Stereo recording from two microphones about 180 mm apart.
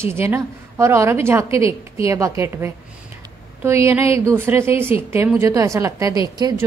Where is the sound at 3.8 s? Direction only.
15° right (ahead or behind).